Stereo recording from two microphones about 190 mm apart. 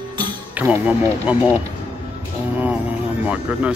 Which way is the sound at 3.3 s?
5° right (ahead or behind).